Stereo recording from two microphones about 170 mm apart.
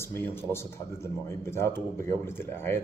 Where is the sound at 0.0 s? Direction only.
15° left (ahead or behind).